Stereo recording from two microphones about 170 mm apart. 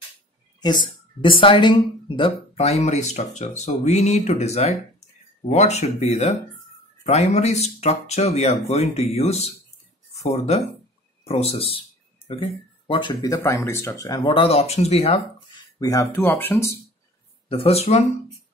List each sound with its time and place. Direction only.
0.6 s speech: 25° left (ahead or behind)
14.2 s speech: 35° left (ahead or behind)
15.8 s speech: 20° left (ahead or behind)
17.5 s speech: 35° left (ahead or behind)